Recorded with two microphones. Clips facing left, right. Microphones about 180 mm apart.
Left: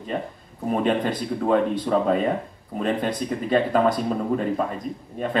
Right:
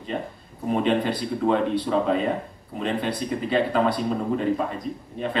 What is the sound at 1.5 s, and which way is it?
Speech, 45° left (ahead or behind).